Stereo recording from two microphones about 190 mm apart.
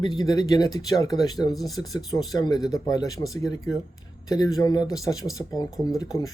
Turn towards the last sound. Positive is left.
turn(degrees=20)  # may be behind; listen again after turning